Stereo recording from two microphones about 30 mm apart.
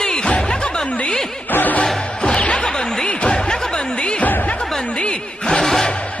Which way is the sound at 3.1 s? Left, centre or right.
Left.